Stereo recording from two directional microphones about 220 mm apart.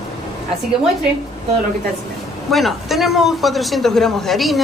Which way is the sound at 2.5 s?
Centre (ahead or behind).